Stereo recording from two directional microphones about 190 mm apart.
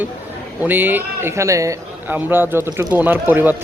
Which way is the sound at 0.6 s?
10° right (ahead or behind).